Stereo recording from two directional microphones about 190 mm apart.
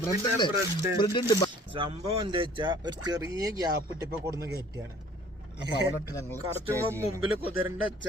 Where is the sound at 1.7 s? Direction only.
30° right (ahead or behind).